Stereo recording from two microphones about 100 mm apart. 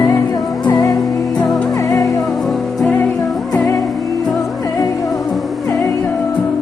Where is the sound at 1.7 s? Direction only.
35° left (ahead or behind).